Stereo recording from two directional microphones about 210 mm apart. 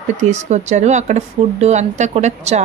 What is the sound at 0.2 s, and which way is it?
Speech, 35° right (ahead or behind).